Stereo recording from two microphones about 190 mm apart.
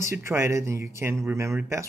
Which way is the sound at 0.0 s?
15° right (ahead or behind).